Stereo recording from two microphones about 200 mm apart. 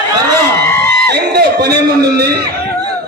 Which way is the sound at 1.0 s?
55° right (ahead or behind).